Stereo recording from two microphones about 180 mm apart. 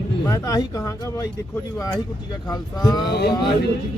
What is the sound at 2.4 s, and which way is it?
Speech, 20° left (ahead or behind).